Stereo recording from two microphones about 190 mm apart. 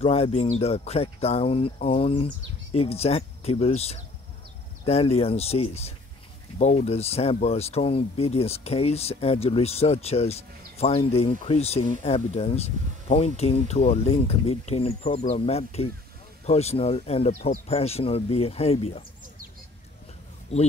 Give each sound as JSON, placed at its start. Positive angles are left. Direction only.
{"t": 0.0, "sound": "speech", "side_deg": 30}
{"t": 20.5, "sound": "speech", "side_deg": 35}